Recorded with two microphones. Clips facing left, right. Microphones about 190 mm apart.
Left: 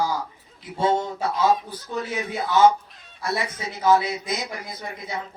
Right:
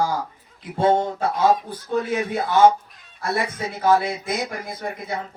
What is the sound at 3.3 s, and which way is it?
A man's voice, 55° right (ahead or behind).